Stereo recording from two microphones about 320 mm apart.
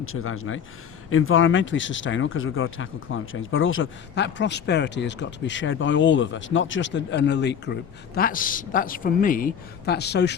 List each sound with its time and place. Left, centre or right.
0.0 s speech: left